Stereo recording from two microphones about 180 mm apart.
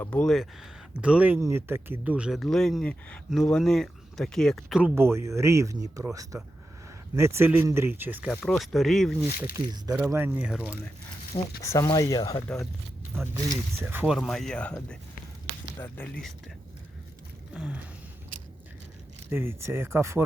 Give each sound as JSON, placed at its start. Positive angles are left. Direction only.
{"t": 0.0, "sound": "speech", "side_deg": 5}
{"t": 4.9, "sound": "speech", "side_deg": -15}
{"t": 7.2, "sound": "speech", "side_deg": -15}
{"t": 8.4, "sound": "speech", "side_deg": 0}
{"t": 9.4, "sound": "speech", "side_deg": -10}
{"t": 11.6, "sound": "speech", "side_deg": 15}
{"t": 13.3, "sound": "speech", "side_deg": -15}
{"t": 17.5, "sound": "gasp", "side_deg": -5}
{"t": 19.3, "sound": "speech", "side_deg": -15}